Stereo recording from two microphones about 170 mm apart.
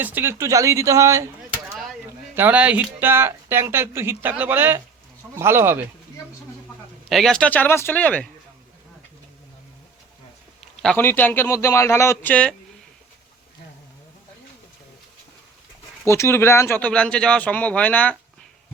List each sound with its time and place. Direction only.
0.0 s speech: 10° right (ahead or behind)
2.3 s speech: 10° right (ahead or behind)
7.1 s speech: centre (ahead or behind)
10.8 s speech: 10° left (ahead or behind)
16.0 s speech: 15° left (ahead or behind)